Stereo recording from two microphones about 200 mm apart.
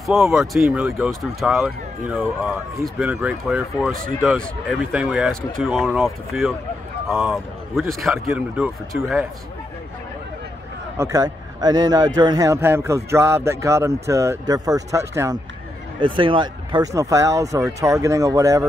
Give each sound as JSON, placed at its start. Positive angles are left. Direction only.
{"t": 0.0, "sound": "a man's voice", "side_deg": 0}
{"t": 11.0, "sound": "a man's voice", "side_deg": -15}